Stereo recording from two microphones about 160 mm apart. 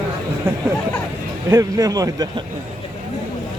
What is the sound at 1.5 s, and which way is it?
Speech, 20° right (ahead or behind).